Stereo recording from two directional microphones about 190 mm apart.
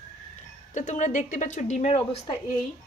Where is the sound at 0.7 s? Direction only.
40° left (ahead or behind).